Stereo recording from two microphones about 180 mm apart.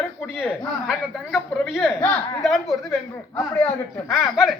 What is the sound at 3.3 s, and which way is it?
Speech, 15° left (ahead or behind).